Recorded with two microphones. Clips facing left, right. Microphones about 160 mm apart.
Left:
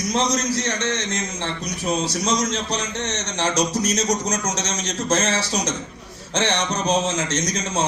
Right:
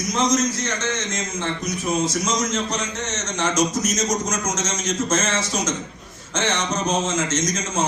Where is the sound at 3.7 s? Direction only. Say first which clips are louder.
Left 1 dB; 70° left (ahead or behind).